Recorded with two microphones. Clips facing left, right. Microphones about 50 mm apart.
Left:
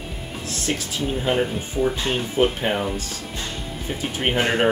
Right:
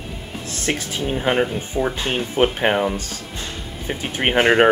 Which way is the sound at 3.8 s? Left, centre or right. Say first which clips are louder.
Right 3 dB; right.